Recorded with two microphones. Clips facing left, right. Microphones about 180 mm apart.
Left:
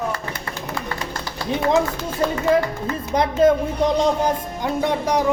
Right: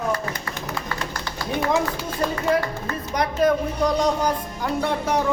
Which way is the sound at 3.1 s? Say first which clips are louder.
Left 4 dB; 25° left (ahead or behind).